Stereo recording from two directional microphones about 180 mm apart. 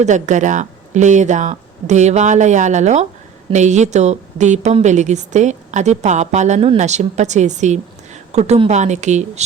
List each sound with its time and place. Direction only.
0.0 s a woman's voice: 40° right (ahead or behind)